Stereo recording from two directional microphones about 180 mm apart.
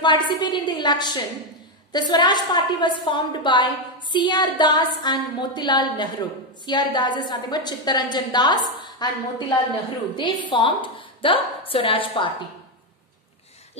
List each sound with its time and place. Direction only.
0.0 s a woman's voice: 25° left (ahead or behind)